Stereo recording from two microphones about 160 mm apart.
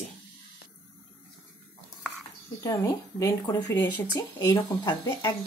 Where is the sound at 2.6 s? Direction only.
20° left (ahead or behind).